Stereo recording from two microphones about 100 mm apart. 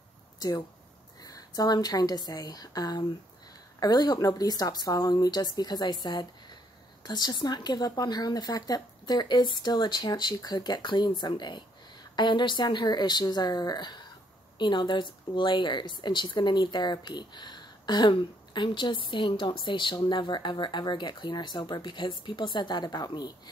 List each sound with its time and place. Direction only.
0.4 s speech: 40° left (ahead or behind)